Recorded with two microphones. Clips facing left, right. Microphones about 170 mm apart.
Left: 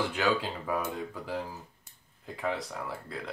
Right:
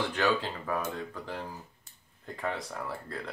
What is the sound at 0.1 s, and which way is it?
Speech, 10° left (ahead or behind).